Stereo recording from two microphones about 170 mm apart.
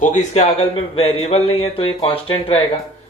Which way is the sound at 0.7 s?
30° left (ahead or behind).